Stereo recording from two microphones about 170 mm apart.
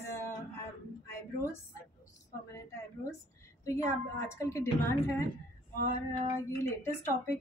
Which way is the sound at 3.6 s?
15° left (ahead or behind).